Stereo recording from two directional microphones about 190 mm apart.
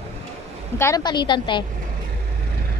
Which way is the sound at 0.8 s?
15° left (ahead or behind).